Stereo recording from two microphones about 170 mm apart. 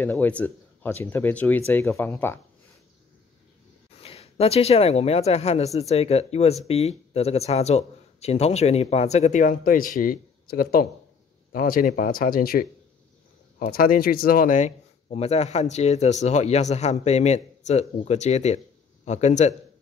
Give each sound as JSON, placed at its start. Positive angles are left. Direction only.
{"t": 0.0, "sound": "speech", "side_deg": 10}
{"t": 4.0, "sound": "a man's voice", "side_deg": 35}